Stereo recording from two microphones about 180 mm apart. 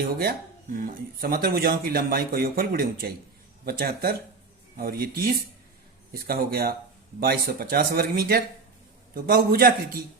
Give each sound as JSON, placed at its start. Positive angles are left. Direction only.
{"t": 0.2, "sound": "speech", "side_deg": -55}